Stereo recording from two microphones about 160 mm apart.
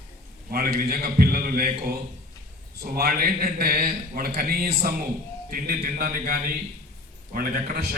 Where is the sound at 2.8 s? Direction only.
70° right (ahead or behind).